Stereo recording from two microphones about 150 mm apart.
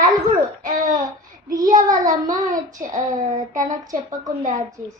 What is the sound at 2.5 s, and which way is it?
Child singing, 60° right (ahead or behind).